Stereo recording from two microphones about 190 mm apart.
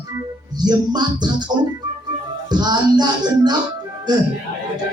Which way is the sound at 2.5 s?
20° right (ahead or behind).